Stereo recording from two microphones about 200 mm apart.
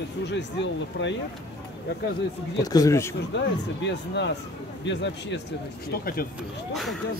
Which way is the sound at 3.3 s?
60° left (ahead or behind).